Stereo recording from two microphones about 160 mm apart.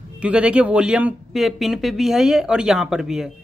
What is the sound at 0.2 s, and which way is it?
Speech, 5° right (ahead or behind).